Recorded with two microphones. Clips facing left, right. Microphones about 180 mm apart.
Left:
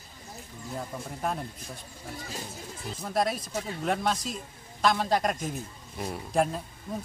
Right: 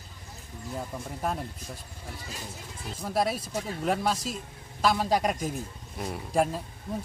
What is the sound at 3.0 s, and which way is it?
A man's voice, 5° right (ahead or behind).